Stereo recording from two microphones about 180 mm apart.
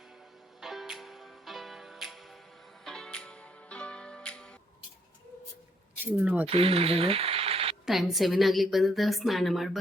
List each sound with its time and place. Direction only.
0.6 s music: centre (ahead or behind)
6.1 s speech: 10° right (ahead or behind)
6.4 s speech: 30° right (ahead or behind)
7.9 s a woman's voice: centre (ahead or behind)